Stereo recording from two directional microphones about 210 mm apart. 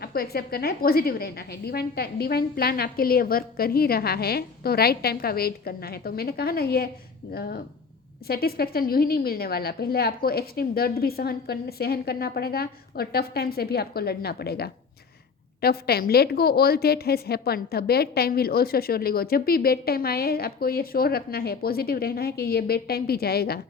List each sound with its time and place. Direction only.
0.0 s a woman's voice: 45° left (ahead or behind)